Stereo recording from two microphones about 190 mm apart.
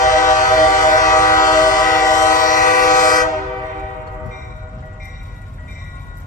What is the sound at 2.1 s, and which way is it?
Train, 45° left (ahead or behind).